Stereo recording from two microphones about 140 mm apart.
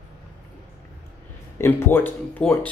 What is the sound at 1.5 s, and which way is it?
A man's voice, 15° left (ahead or behind).